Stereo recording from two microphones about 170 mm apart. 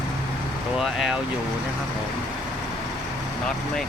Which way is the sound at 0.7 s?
5° right (ahead or behind).